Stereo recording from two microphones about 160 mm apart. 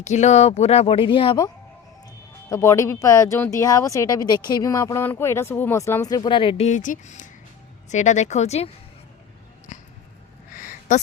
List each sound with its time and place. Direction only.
0.0 s speech: 45° left (ahead or behind)
2.5 s speech: 20° left (ahead or behind); by 6.7 s 35° left (ahead or behind)
6.7 s speech: 50° left (ahead or behind)
9.7 s a sound: 50° left (ahead or behind)